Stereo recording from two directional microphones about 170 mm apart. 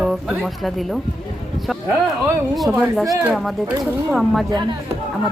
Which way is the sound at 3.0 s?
20° right (ahead or behind).